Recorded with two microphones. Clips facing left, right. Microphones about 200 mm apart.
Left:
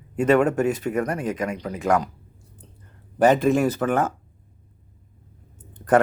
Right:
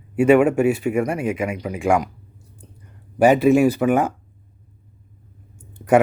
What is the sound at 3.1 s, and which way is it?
Speech, 10° right (ahead or behind).